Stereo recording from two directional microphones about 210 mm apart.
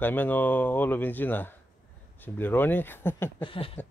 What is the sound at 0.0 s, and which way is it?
Speech, 10° left (ahead or behind).